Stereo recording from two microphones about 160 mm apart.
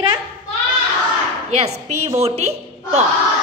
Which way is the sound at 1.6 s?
45° right (ahead or behind).